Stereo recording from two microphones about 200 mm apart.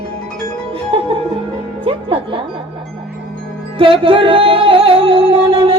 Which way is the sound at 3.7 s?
25° right (ahead or behind).